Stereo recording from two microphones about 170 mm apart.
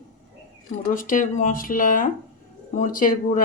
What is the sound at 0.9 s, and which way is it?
A woman's voice, 55° left (ahead or behind).